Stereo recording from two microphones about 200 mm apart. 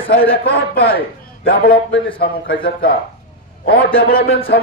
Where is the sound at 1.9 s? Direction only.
65° left (ahead or behind).